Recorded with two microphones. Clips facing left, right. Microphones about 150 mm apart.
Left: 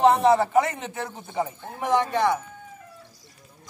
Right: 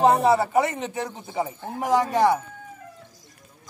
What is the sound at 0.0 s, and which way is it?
Speech, 10° right (ahead or behind).